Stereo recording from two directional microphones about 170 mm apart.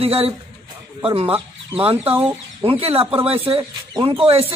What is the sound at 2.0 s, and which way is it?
Speech, 10° right (ahead or behind).